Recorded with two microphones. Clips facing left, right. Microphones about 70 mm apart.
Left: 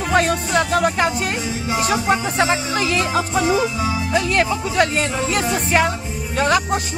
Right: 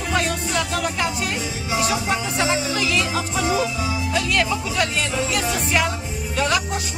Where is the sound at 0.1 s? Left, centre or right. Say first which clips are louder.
Left 6 dB; left.